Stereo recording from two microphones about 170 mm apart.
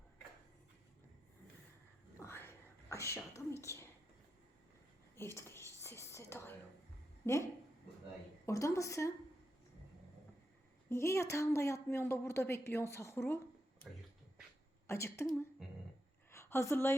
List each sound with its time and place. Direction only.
2.1 s whispering: 15° left (ahead or behind)
5.1 s whispering: 15° left (ahead or behind)
7.2 s a woman's voice: 15° left (ahead or behind)
8.4 s a sound: 15° left (ahead or behind)
10.8 s a woman's voice: 15° left (ahead or behind)
14.8 s a sound: 15° left (ahead or behind)